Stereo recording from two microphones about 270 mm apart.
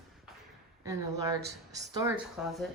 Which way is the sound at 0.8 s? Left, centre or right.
Centre.